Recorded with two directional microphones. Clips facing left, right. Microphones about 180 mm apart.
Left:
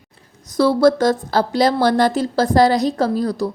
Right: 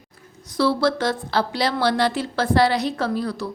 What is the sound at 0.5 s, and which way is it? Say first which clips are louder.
Speech: left 6 dB; 45° left (ahead or behind).